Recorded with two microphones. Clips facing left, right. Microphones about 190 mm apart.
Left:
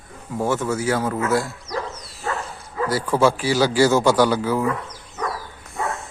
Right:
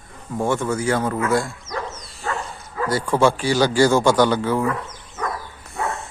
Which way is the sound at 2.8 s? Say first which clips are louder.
Even; 5° left (ahead or behind).